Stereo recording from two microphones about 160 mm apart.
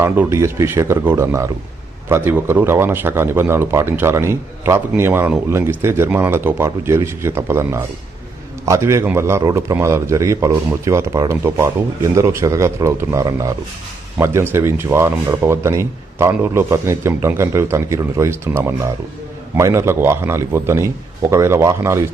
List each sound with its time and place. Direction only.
0.0 s a man's voice: 15° right (ahead or behind)
19.5 s a man's voice: 15° right (ahead or behind)